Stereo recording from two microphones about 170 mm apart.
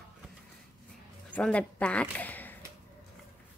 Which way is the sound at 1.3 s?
5° left (ahead or behind).